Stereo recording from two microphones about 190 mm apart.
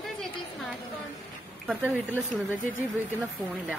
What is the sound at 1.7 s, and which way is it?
Speech, 10° right (ahead or behind).